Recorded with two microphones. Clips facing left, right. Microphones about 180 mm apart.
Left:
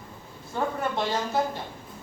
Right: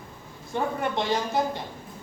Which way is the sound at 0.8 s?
15° right (ahead or behind).